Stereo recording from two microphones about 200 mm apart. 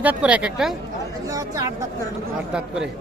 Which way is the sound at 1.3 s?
15° right (ahead or behind).